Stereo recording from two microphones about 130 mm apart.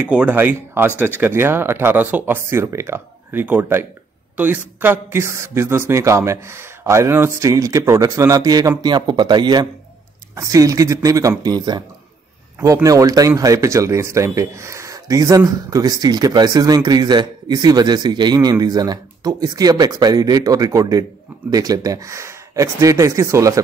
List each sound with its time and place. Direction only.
0.0 s speech: 10° right (ahead or behind)